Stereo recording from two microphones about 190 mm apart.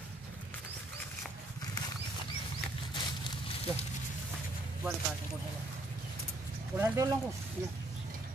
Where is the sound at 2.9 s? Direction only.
25° left (ahead or behind).